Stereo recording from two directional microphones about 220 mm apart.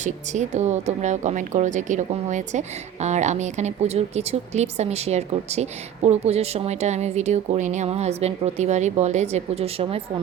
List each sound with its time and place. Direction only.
0.0 s speech: 30° right (ahead or behind)